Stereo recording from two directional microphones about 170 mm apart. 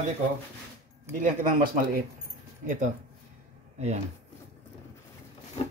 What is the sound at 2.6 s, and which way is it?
Speech, 50° right (ahead or behind).